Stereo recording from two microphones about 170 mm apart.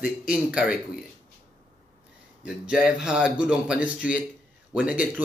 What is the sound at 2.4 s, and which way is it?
Speech, 5° right (ahead or behind).